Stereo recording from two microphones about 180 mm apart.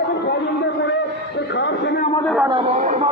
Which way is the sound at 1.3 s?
75° left (ahead or behind).